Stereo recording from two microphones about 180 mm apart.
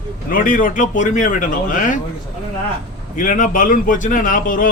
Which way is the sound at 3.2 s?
45° left (ahead or behind).